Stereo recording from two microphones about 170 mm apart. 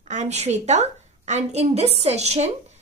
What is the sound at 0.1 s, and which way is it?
A woman's voice, 40° right (ahead or behind).